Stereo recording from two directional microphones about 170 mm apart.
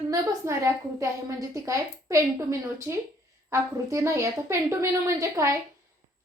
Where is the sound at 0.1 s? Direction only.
20° right (ahead or behind).